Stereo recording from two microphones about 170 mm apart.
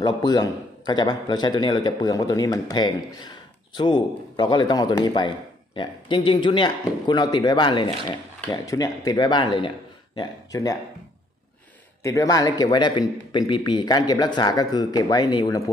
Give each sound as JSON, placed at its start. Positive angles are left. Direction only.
{"t": 0.0, "sound": "a man's voice", "side_deg": 25}
{"t": 12.0, "sound": "a man's voice", "side_deg": 20}